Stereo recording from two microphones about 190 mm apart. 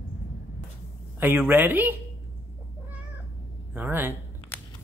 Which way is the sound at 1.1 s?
10° right (ahead or behind).